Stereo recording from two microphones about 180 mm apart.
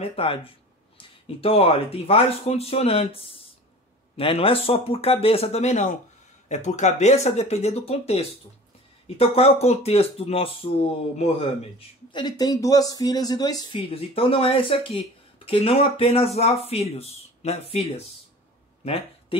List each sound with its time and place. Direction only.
0.1 s speech: 30° left (ahead or behind)